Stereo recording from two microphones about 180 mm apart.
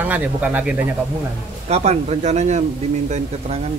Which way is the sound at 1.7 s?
35° right (ahead or behind).